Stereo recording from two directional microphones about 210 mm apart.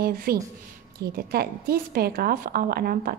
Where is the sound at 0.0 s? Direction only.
45° right (ahead or behind).